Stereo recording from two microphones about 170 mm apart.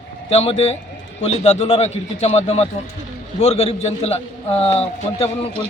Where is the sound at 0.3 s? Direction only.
35° left (ahead or behind).